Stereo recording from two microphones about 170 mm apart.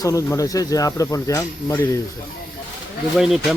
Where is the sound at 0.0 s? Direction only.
20° left (ahead or behind).